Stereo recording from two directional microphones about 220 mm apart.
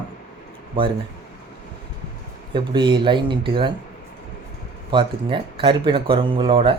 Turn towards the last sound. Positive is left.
turn(degrees=-25)  # may be behind; listen again after turning